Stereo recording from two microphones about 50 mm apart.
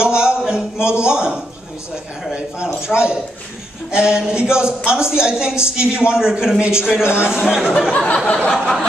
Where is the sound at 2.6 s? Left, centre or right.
Centre.